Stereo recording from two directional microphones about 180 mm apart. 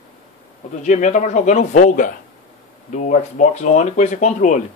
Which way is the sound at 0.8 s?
40° left (ahead or behind).